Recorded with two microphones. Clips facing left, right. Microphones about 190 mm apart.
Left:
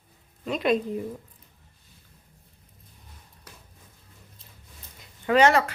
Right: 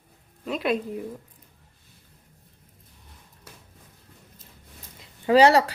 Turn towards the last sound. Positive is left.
turn(degrees=-35)  # may be behind; listen again after turning